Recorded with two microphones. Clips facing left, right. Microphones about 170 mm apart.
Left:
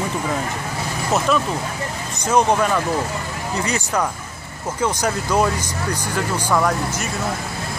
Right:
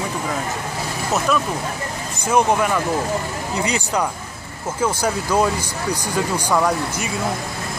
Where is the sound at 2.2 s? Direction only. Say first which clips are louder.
Even; 10° right (ahead or behind).